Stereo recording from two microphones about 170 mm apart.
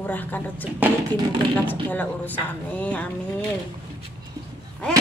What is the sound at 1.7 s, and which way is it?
A woman's voice, 10° left (ahead or behind).